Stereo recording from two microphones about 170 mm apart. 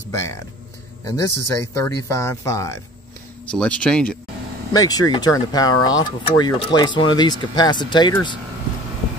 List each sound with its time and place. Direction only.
0.1 s speech: 20° left (ahead or behind)
3.4 s speech: 5° left (ahead or behind)
4.7 s speech: 20° left (ahead or behind)